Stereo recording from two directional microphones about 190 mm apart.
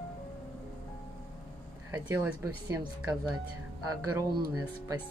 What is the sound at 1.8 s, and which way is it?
Speech, 15° right (ahead or behind).